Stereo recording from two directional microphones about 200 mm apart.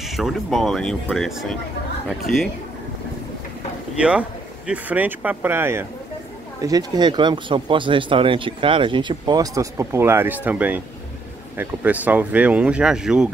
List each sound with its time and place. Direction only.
0.1 s speech: centre (ahead or behind)
3.9 s speech: 5° right (ahead or behind)